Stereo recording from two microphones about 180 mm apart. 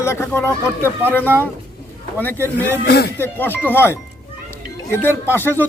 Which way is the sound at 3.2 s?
10° left (ahead or behind).